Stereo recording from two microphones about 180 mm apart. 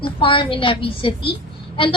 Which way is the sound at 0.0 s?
30° left (ahead or behind).